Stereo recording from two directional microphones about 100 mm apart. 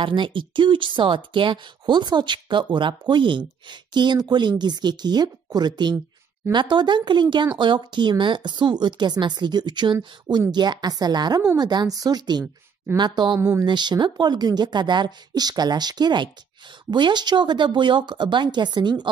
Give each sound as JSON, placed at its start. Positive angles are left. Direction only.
{"t": 0.0, "sound": "speech", "side_deg": -55}
{"t": 13.4, "sound": "speech", "side_deg": -25}
{"t": 13.7, "sound": "speech", "side_deg": -45}